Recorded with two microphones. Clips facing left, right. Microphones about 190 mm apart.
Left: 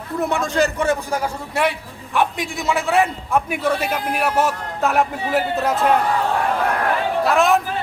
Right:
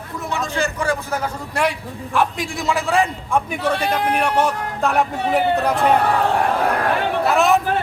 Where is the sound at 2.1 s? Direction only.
Centre (ahead or behind).